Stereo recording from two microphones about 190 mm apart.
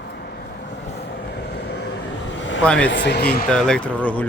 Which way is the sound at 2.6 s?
5° left (ahead or behind).